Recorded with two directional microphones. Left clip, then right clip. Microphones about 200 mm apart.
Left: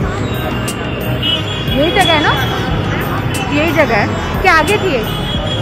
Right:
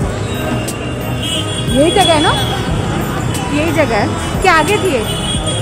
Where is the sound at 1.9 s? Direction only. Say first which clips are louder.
Left 1 dB; 60° right (ahead or behind).